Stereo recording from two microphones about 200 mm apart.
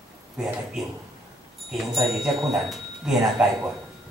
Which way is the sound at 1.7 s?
Centre (ahead or behind).